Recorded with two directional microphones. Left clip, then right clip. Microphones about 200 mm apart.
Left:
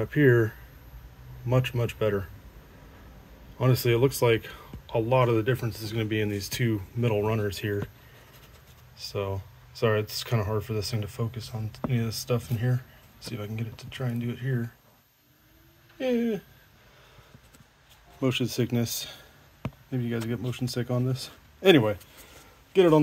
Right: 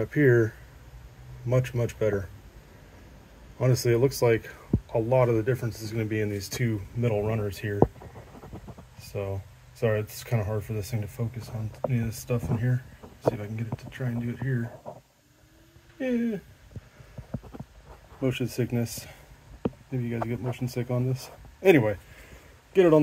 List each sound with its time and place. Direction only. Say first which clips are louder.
0.0 s speech: even; 5° left (ahead or behind)
1.5 s speech: even; 5° left (ahead or behind)
3.5 s speech: even; 5° left (ahead or behind)
9.1 s speech: left 1 dB; 10° left (ahead or behind)
12.3 s speech: right 1 dB; 15° left (ahead or behind)
16.0 s speech: left 2 dB; 15° left (ahead or behind)
18.2 s speech: left 2 dB; 5° left (ahead or behind)
21.1 s a sound: left 1 dB; 20° left (ahead or behind)
21.6 s speech: even; 5° left (ahead or behind)